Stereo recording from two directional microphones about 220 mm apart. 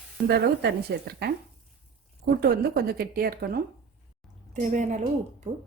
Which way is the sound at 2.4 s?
45° right (ahead or behind).